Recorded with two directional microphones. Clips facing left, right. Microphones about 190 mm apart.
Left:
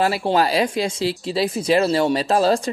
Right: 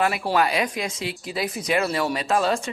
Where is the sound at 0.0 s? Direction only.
30° left (ahead or behind).